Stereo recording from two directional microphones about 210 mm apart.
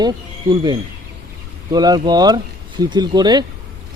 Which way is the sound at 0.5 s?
20° right (ahead or behind).